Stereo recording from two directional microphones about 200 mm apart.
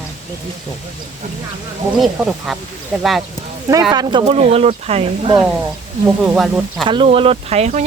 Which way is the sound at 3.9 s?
20° right (ahead or behind).